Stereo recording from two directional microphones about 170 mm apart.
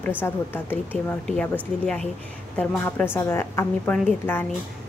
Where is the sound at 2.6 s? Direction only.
10° left (ahead or behind).